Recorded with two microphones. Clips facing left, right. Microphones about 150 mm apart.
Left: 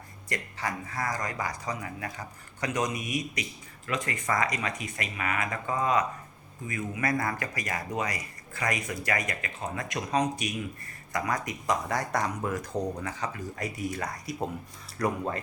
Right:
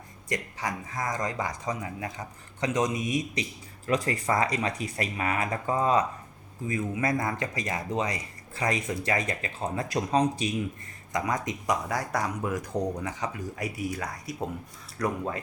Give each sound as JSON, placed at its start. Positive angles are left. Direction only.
{"t": 0.3, "sound": "speech", "side_deg": -15}
{"t": 3.8, "sound": "speech", "side_deg": -35}